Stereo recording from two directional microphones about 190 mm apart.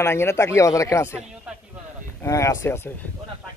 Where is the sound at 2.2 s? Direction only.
15° left (ahead or behind).